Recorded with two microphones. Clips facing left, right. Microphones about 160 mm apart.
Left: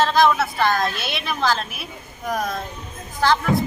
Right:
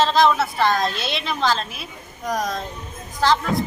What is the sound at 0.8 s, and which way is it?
Speech, 25° right (ahead or behind).